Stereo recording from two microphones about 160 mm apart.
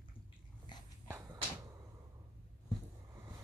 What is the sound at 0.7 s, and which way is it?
Dog, 30° left (ahead or behind).